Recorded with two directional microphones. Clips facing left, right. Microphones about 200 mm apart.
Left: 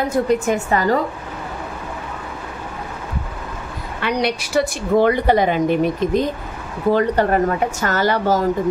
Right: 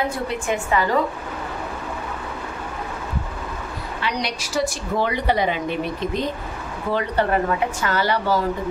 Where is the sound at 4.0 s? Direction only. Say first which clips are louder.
Left 7 dB; 60° left (ahead or behind).